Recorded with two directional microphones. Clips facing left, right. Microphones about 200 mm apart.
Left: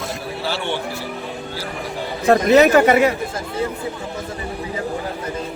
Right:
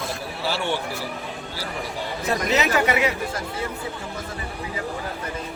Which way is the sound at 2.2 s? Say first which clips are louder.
Left 11 dB; 55° left (ahead or behind).